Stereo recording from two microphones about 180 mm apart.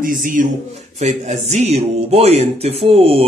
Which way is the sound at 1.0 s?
40° right (ahead or behind).